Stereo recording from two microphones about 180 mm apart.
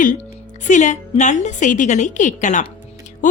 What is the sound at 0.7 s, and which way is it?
A woman's voice, 40° left (ahead or behind).